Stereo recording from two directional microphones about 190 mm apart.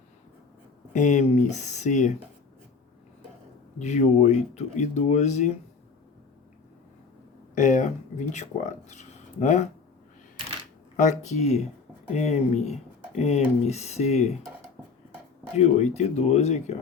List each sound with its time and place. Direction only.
0.9 s speech: 40° left (ahead or behind)
3.8 s speech: 40° left (ahead or behind)
7.5 s speech: 40° left (ahead or behind)
10.9 s speech: 40° left (ahead or behind)
15.5 s speech: 35° left (ahead or behind)